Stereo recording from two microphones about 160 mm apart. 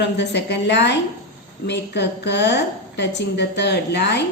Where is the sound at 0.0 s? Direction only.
90° left.